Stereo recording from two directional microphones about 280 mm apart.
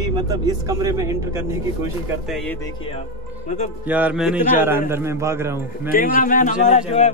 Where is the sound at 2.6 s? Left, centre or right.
Centre.